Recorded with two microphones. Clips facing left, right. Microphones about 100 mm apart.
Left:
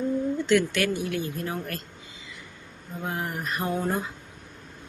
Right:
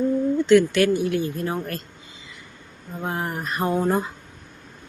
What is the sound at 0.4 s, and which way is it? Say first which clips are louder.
Speech: right 8 dB; 35° right (ahead or behind).